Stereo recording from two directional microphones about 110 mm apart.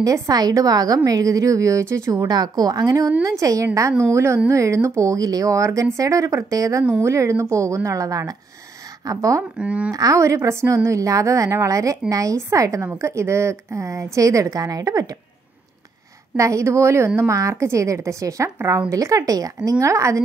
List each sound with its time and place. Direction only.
0.0 s a woman's voice: 35° right (ahead or behind)
2.1 s a woman's voice: 40° right (ahead or behind)
9.6 s speech: 10° right (ahead or behind)
9.9 s a woman's voice: 30° right (ahead or behind)
16.3 s a woman's voice: 30° right (ahead or behind)